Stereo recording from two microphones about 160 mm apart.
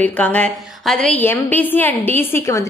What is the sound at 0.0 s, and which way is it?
A woman's voice, 10° left (ahead or behind).